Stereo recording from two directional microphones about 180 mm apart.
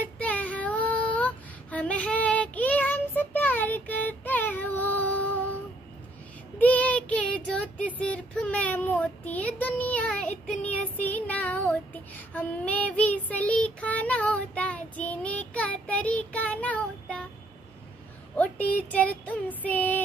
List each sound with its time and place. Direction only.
0.0 s child singing: 10° left (ahead or behind)
6.6 s child singing: 10° left (ahead or behind)
18.3 s a woman's voice: 10° left (ahead or behind)
19.2 s child singing: 10° left (ahead or behind)